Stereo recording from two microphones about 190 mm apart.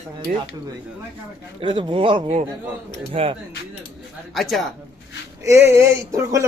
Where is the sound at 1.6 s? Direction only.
25° right (ahead or behind).